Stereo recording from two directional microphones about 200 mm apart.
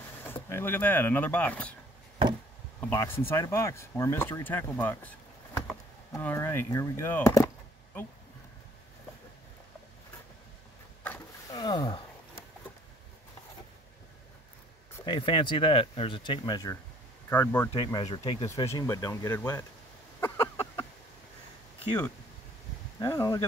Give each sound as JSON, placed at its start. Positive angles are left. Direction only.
{"t": 0.3, "sound": "speech", "side_deg": 10}
{"t": 2.9, "sound": "speech", "side_deg": 10}
{"t": 6.1, "sound": "speech", "side_deg": 10}
{"t": 11.5, "sound": "a sound", "side_deg": 20}
{"t": 15.0, "sound": "speech", "side_deg": 25}
{"t": 17.7, "sound": "speech", "side_deg": 20}
{"t": 18.4, "sound": "speech", "side_deg": 15}
{"t": 20.2, "sound": "a sound", "side_deg": 10}
{"t": 22.9, "sound": "speech", "side_deg": 15}